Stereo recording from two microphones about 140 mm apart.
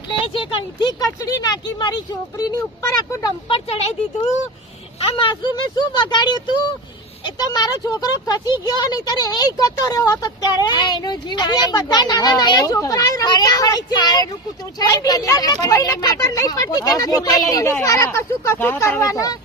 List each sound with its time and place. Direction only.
0.5 s speech: 35° left (ahead or behind)
3.5 s speech: 45° left (ahead or behind); by 19.4 s 25° left (ahead or behind)